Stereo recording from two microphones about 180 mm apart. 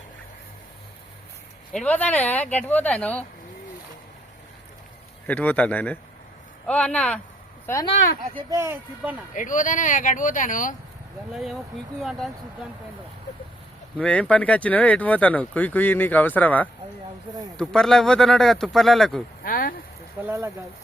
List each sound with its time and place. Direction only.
1.7 s speech: 10° left (ahead or behind)
5.2 s speech: 10° left (ahead or behind)
8.4 s speech: 15° right (ahead or behind)
9.3 s speech: 45° left (ahead or behind)
11.3 s speech: centre (ahead or behind)
14.0 s speech: 5° left (ahead or behind)
19.4 s a sound: 55° left (ahead or behind)
20.2 s speech: 15° right (ahead or behind)